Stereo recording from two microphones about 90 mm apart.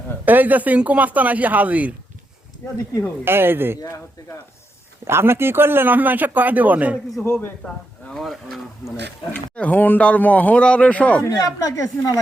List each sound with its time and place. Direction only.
0.3 s speech: 20° right (ahead or behind)
3.2 s speech: 25° right (ahead or behind)
3.8 s speech: 45° left (ahead or behind)
5.0 s speech: 25° right (ahead or behind)
7.2 s a man's voice: 20° left (ahead or behind)
8.1 s speech: centre (ahead or behind)
9.3 s speech: 15° left (ahead or behind)
11.2 s a woman's voice: 45° left (ahead or behind)